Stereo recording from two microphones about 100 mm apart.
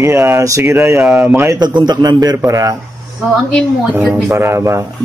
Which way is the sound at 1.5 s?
45° right (ahead or behind).